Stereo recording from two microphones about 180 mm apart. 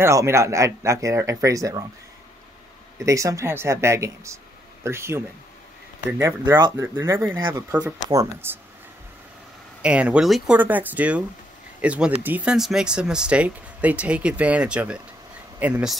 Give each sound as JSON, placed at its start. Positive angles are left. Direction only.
{"t": 0.0, "sound": "speech", "side_deg": -15}
{"t": 3.0, "sound": "speech", "side_deg": -20}
{"t": 9.8, "sound": "speech", "side_deg": -5}